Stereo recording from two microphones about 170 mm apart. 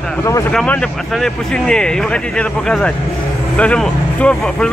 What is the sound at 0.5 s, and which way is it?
A man's voice, 5° left (ahead or behind).